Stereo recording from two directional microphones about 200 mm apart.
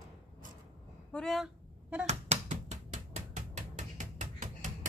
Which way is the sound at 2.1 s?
35° right (ahead or behind).